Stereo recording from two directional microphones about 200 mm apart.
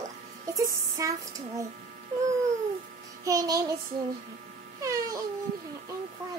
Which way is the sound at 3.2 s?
20° right (ahead or behind).